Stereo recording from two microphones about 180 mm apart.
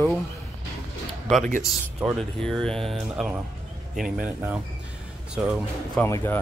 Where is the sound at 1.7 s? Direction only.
Centre (ahead or behind).